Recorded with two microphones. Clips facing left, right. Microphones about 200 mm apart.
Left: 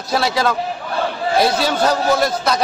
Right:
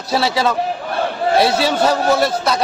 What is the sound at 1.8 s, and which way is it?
Speech, 5° right (ahead or behind).